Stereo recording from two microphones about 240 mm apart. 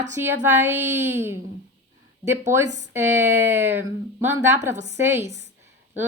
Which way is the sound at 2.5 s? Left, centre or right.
Centre.